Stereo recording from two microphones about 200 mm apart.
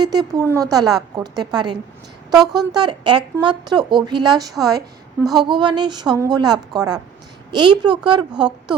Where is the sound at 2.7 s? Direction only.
20° right (ahead or behind).